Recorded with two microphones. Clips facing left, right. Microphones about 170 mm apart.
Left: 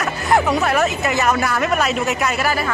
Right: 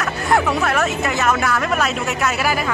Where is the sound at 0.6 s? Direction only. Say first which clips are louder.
Left 1 dB; centre (ahead or behind).